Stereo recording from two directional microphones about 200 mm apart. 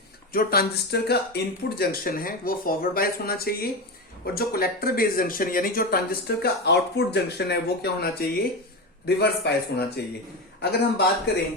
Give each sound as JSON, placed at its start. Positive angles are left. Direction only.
{"t": 0.3, "sound": "a man's voice", "side_deg": 50}